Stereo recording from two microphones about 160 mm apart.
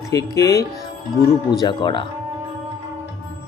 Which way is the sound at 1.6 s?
30° left (ahead or behind).